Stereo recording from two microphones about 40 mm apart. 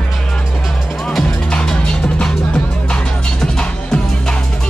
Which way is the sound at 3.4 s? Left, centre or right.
Centre.